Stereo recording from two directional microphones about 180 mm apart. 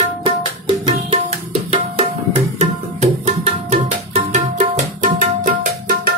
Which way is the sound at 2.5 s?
40° right (ahead or behind).